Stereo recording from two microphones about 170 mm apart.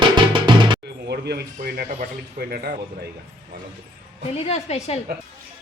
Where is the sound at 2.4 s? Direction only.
65° right (ahead or behind).